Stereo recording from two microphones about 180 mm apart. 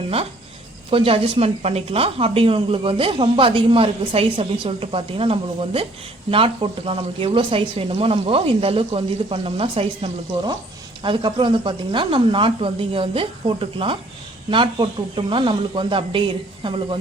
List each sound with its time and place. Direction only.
0.9 s a woman's voice: 30° right (ahead or behind)